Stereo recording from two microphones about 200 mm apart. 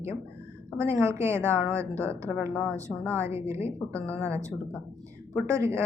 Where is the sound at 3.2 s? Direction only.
10° right (ahead or behind).